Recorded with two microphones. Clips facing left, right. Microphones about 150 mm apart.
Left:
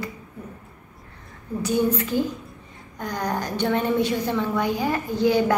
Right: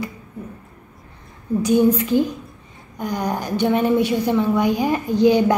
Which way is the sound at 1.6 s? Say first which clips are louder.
Right 6 dB; 15° right (ahead or behind).